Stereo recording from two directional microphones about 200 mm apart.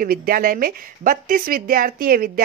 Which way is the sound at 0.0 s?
45° right (ahead or behind).